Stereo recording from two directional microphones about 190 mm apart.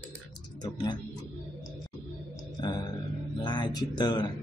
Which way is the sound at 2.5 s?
20° left (ahead or behind).